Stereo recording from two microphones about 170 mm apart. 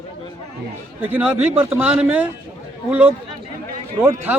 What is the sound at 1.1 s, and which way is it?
Speech, 10° right (ahead or behind).